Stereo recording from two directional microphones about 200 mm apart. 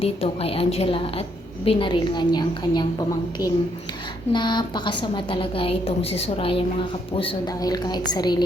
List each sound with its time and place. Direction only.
0.0 s a woman's voice: 30° left (ahead or behind)
4.3 s a woman's voice: 20° left (ahead or behind)